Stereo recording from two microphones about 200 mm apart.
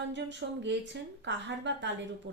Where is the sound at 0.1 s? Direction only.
65° right (ahead or behind).